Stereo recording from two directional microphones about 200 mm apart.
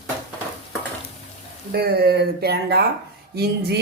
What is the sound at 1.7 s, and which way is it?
Speech, 50° right (ahead or behind).